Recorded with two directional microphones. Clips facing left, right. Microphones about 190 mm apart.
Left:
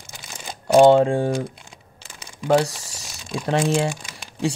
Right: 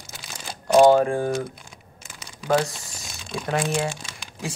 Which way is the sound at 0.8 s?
25° left (ahead or behind).